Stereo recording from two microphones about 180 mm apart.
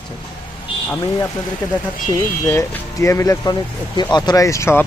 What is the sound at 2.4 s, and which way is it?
Speech, 15° left (ahead or behind).